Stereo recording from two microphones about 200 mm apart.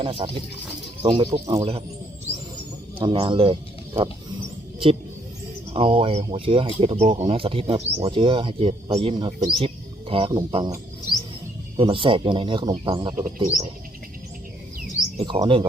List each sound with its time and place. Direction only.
0.0 s speech: 25° right (ahead or behind)
3.0 s speech: 25° right (ahead or behind)
5.7 s speech: 25° right (ahead or behind)
11.8 s speech: 25° right (ahead or behind)
15.2 s speech: 25° right (ahead or behind)